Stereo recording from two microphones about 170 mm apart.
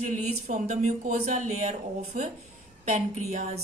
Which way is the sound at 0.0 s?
45° right (ahead or behind).